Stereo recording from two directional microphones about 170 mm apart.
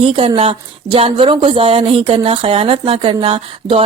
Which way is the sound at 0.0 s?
30° right (ahead or behind).